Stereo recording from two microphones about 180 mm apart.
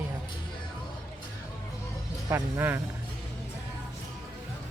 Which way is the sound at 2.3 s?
15° right (ahead or behind).